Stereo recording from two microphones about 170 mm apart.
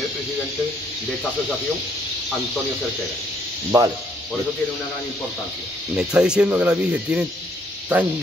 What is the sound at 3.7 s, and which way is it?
Speech, 20° right (ahead or behind).